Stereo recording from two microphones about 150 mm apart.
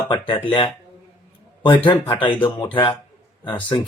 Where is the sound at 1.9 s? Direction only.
35° left (ahead or behind).